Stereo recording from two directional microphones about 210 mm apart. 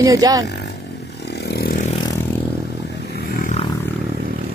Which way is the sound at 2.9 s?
50° left (ahead or behind).